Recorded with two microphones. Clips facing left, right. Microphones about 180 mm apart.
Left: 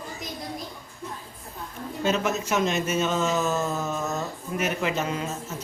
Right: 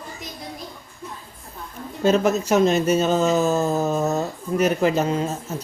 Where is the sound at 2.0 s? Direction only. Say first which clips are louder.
Right 7 dB; 40° right (ahead or behind).